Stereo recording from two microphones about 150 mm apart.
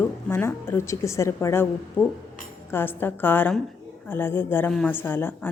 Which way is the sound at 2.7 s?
15° left (ahead or behind).